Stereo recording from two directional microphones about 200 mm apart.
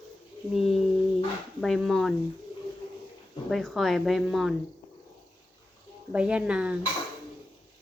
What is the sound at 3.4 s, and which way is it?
Speech, centre (ahead or behind).